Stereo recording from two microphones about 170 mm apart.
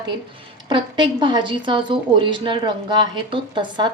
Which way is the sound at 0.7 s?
25° right (ahead or behind).